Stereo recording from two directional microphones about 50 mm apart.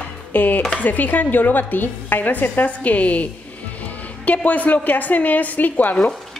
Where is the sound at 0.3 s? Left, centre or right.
Left.